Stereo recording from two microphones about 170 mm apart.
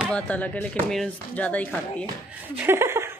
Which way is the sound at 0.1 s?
10° left (ahead or behind).